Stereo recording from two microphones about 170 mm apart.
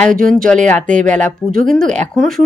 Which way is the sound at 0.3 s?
5° left (ahead or behind).